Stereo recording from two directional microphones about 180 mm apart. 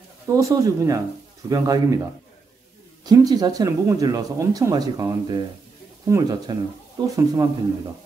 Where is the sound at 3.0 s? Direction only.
20° right (ahead or behind).